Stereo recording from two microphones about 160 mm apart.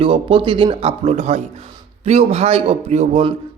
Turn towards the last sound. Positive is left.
turn(degrees=-40)  # may be behind; listen again after turning